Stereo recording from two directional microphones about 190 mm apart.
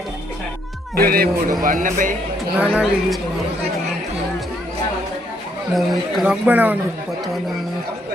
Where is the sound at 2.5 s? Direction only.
5° right (ahead or behind).